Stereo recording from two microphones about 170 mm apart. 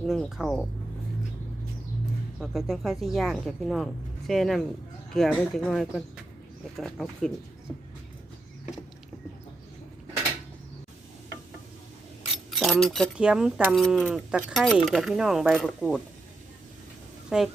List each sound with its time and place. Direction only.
0.0 s speech: centre (ahead or behind)
2.4 s speech: centre (ahead or behind)
12.5 s speech: centre (ahead or behind)
17.2 s speech: centre (ahead or behind)